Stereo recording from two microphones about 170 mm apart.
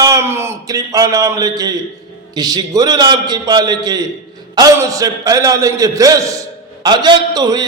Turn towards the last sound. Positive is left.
turn(degrees=-25)  # may be behind; listen again after turning